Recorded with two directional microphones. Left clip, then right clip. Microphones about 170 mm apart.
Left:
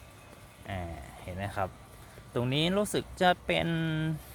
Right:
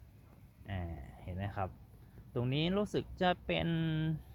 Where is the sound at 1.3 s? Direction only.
10° left (ahead or behind).